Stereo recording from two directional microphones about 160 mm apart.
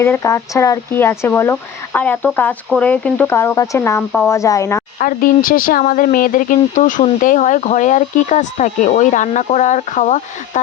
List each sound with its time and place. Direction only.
0.0 s speech: 15° left (ahead or behind)
4.9 s speech: 60° left (ahead or behind)